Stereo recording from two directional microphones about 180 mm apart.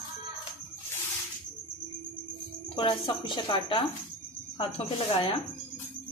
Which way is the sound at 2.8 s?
30° left (ahead or behind).